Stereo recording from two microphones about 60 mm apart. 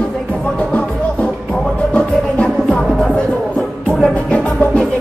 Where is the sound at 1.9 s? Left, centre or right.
Centre.